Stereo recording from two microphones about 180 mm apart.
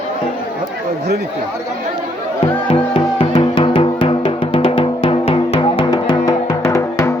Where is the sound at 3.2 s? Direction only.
30° left (ahead or behind).